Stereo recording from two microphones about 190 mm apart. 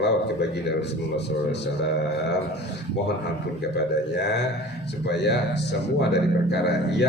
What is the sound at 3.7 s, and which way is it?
A man's voice, 60° left (ahead or behind).